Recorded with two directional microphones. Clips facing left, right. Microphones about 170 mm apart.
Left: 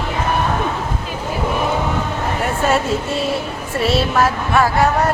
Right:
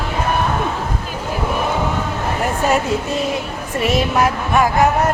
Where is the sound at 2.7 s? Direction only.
15° right (ahead or behind).